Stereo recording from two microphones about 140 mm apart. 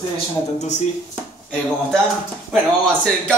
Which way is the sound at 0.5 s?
60° left (ahead or behind).